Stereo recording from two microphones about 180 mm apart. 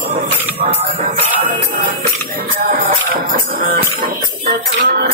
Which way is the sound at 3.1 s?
55° right (ahead or behind).